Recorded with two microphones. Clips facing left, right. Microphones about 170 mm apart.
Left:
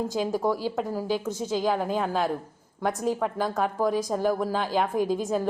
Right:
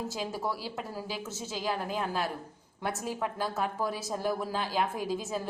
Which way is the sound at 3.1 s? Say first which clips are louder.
Left 7 dB; 45° left (ahead or behind).